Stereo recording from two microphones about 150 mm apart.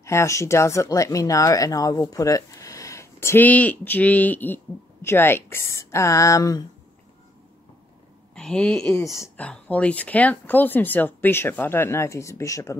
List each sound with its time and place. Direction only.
0.0 s speech: 20° left (ahead or behind)
8.4 s speech: 5° left (ahead or behind)
9.0 s speech: 20° left (ahead or behind)
9.4 s speech: 10° left (ahead or behind)